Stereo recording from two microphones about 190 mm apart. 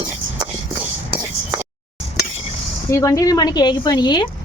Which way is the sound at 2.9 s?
15° left (ahead or behind).